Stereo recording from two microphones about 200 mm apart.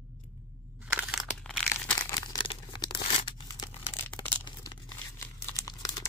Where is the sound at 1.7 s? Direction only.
15° left (ahead or behind).